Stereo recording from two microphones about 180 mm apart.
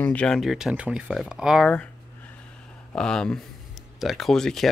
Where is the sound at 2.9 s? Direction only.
5° left (ahead or behind).